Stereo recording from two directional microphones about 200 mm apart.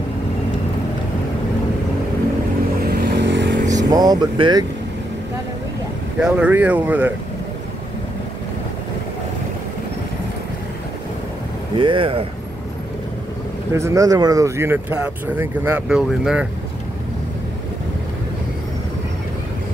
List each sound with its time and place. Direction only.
2.9 s vehicle: 55° right (ahead or behind)
3.7 s speech: 20° right (ahead or behind)
6.1 s speech: 5° right (ahead or behind)
11.7 s speech: 25° right (ahead or behind)
13.7 s speech: 15° right (ahead or behind)